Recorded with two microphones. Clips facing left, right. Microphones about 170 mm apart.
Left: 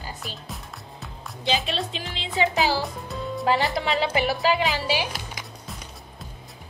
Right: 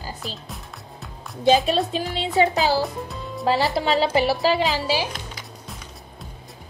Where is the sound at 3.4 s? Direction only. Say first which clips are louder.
Right 3 dB; 40° right (ahead or behind).